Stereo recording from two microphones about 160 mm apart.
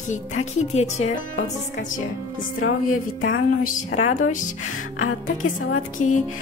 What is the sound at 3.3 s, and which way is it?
Music, 65° left (ahead or behind).